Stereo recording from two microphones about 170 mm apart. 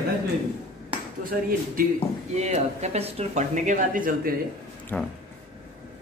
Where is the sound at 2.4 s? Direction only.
40° right (ahead or behind).